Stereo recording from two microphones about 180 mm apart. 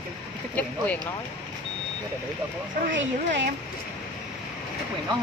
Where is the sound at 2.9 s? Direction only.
85° right.